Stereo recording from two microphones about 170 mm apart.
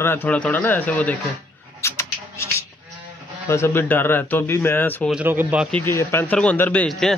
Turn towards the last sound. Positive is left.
turn(degrees=5)  # may be behind; listen again after turning